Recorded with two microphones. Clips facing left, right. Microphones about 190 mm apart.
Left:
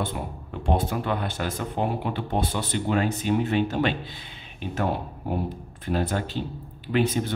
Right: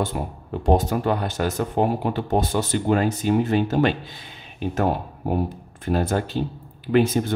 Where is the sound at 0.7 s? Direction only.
40° right (ahead or behind).